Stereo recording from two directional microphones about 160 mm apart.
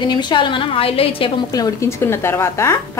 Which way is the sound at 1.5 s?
20° left (ahead or behind).